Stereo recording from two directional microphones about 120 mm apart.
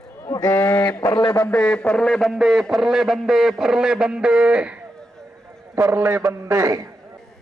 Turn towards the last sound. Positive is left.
turn(degrees=-25)  # may be behind; listen again after turning